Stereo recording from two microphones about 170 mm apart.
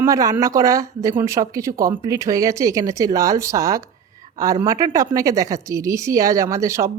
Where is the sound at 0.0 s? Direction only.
20° right (ahead or behind).